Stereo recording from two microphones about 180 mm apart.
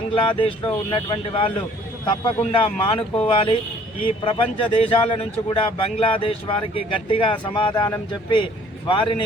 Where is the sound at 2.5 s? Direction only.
30° left (ahead or behind).